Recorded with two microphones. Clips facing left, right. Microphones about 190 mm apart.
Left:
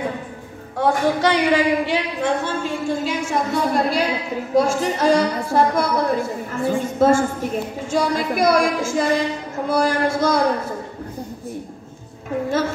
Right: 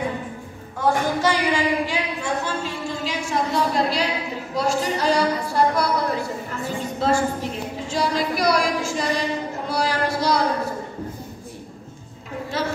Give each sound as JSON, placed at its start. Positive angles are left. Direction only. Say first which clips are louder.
{"t": 0.7, "sound": "a woman's voice", "louder": "left 3 dB", "side_deg": 65}